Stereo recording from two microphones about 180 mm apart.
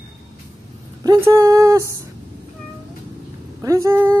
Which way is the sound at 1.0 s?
15° right (ahead or behind).